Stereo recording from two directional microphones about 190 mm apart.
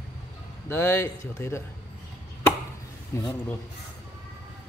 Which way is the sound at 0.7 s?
15° left (ahead or behind).